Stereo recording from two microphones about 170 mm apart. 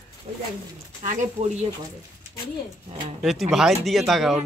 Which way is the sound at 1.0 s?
40° right (ahead or behind).